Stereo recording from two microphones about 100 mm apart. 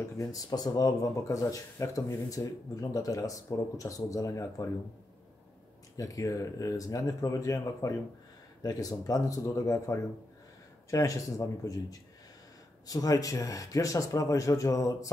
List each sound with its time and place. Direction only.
0.3 s speech: 40° left (ahead or behind)
5.9 s speech: 35° left (ahead or behind)